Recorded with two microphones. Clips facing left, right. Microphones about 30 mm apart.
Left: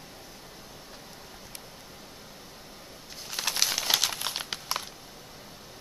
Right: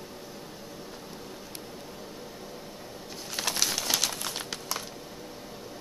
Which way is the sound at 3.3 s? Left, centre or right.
Centre.